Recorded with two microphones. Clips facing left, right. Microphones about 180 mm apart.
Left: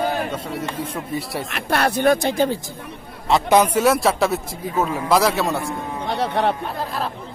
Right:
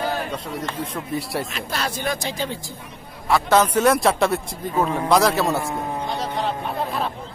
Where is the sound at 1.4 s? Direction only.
65° left (ahead or behind).